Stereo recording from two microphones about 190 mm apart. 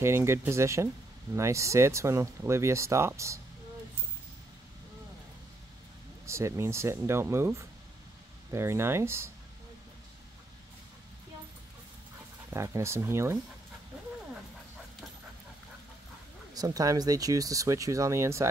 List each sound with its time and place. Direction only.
0.0 s speech: 15° right (ahead or behind)
6.2 s speech: 15° right (ahead or behind)
12.4 s speech: 15° right (ahead or behind)
16.5 s speech: 20° right (ahead or behind)